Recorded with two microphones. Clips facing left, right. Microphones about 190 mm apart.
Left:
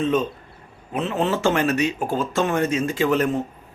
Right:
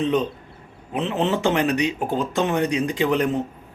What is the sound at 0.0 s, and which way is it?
A man's voice, 20° right (ahead or behind).